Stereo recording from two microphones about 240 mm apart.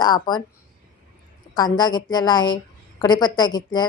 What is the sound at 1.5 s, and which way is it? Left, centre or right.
A woman's voice, centre.